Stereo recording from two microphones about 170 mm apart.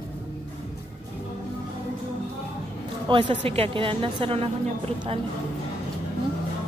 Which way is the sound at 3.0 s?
30° right (ahead or behind).